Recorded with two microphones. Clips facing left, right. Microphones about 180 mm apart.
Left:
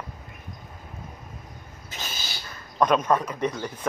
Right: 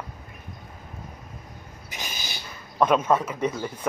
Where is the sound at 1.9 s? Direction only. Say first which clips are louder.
Even; 15° right (ahead or behind).